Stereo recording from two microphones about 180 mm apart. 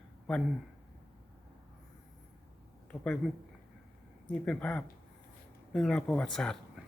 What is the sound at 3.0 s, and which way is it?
Speech, 5° left (ahead or behind).